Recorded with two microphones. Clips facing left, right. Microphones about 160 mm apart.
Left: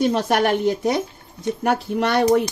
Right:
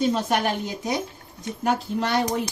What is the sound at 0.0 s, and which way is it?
Speech, 65° left (ahead or behind).